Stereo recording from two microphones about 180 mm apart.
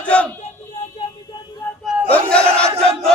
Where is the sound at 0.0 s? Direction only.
5° left (ahead or behind).